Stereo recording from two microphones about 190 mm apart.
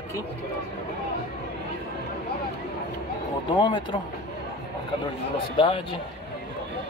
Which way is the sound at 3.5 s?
25° left (ahead or behind).